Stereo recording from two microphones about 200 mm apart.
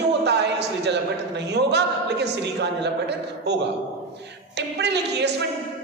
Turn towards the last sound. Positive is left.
turn(degrees=-60)  # may be behind; listen again after turning